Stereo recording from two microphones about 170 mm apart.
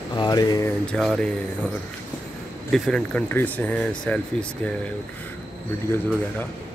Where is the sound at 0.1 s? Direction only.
25° left (ahead or behind).